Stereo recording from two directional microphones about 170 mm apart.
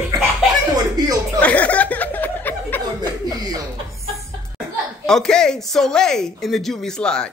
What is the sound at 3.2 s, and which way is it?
Chuckle, 20° right (ahead or behind).